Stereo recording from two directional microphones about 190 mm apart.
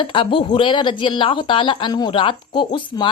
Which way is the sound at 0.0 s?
25° left (ahead or behind).